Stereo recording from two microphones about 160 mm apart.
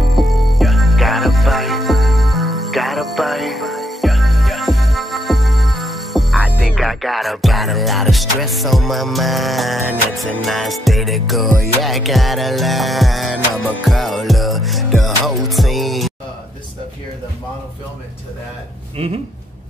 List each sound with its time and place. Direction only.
0.1 s music: centre (ahead or behind)
19.0 s speech: 40° right (ahead or behind)